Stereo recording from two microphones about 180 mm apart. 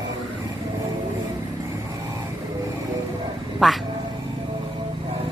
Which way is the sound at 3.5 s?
Centre (ahead or behind).